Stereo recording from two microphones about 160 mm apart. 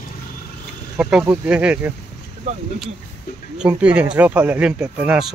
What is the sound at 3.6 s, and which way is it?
Speech, 10° right (ahead or behind).